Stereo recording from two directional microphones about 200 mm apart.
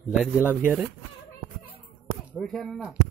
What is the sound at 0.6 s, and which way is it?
Speech, 5° right (ahead or behind).